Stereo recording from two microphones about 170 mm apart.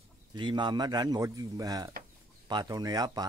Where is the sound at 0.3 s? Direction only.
25° right (ahead or behind).